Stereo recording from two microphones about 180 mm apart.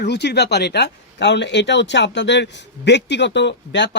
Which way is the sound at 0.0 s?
70° left (ahead or behind).